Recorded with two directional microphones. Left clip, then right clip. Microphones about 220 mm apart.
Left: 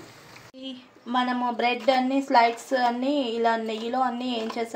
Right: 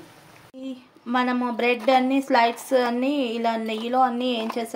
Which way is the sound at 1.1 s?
35° right (ahead or behind).